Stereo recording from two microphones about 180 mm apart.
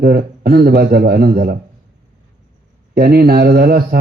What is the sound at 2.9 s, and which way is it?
Speech, 60° right (ahead or behind).